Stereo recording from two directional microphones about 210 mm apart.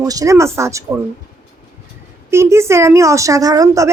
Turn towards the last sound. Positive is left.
turn(degrees=-15)  # may be behind; listen again after turning